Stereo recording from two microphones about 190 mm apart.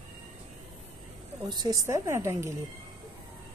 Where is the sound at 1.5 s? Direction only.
25° right (ahead or behind).